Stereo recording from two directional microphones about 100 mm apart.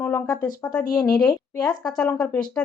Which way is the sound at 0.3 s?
40° left (ahead or behind).